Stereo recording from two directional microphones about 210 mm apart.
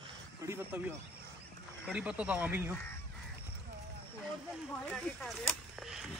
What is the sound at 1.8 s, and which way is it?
Speech, 5° right (ahead or behind).